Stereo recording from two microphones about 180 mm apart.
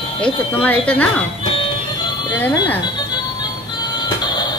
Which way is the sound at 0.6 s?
10° left (ahead or behind).